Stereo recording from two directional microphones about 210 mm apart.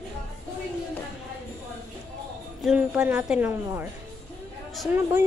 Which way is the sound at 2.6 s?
5° right (ahead or behind).